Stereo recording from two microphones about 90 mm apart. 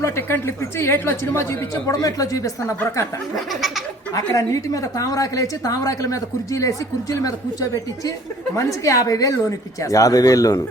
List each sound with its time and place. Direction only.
0.0 s a woman's voice: 30° left (ahead or behind)
2.0 s a woman's voice: 40° left (ahead or behind)
3.5 s a sound: centre (ahead or behind)
4.1 s a woman's voice: 40° left (ahead or behind)